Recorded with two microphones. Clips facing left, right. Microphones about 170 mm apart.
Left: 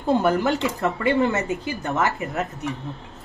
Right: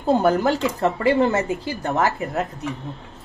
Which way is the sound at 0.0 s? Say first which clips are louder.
Right 2 dB; 35° right (ahead or behind).